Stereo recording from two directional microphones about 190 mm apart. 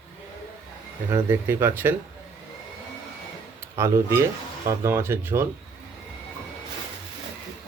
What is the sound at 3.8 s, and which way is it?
Speech, 15° right (ahead or behind).